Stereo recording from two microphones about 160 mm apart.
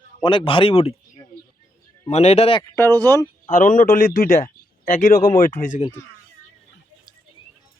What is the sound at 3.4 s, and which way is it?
Speech, 55° left (ahead or behind).